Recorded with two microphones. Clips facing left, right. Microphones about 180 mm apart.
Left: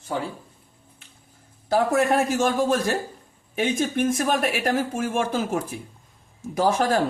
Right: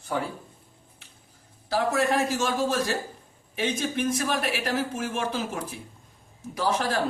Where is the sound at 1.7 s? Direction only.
50° left (ahead or behind).